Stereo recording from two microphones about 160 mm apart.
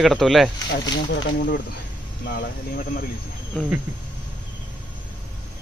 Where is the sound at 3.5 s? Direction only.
5° left (ahead or behind).